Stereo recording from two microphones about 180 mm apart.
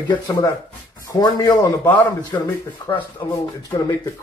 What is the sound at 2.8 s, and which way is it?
Speech, 30° left (ahead or behind).